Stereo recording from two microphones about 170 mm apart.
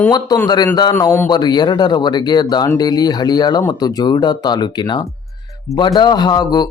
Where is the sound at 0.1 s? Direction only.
25° left (ahead or behind).